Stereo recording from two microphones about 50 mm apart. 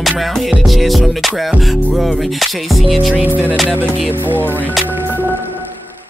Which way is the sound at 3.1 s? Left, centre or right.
Right.